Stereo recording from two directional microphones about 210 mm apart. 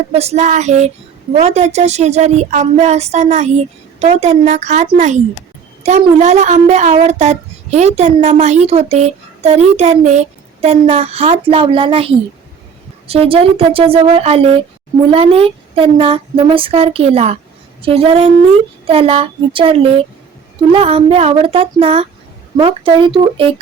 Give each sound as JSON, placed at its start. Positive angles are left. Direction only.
{"t": 0.1, "sound": "speech", "side_deg": -30}